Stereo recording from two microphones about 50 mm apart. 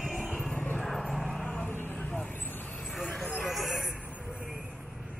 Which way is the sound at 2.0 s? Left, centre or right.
Left.